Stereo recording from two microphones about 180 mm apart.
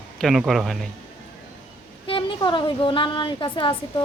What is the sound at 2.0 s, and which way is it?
A woman's voice, 30° left (ahead or behind).